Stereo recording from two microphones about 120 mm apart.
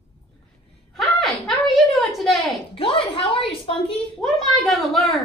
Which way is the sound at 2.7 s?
50° left (ahead or behind).